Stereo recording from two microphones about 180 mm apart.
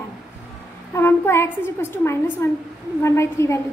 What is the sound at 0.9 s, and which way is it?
A woman's voice, 15° left (ahead or behind).